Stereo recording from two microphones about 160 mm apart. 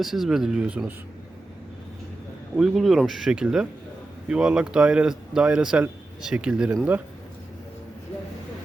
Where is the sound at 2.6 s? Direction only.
Centre (ahead or behind).